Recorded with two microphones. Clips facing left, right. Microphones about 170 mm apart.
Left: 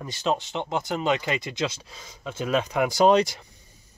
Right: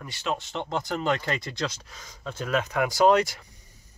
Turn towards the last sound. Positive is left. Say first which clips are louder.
# left 2 dB
turn(degrees=20)  # may be behind; listen again after turning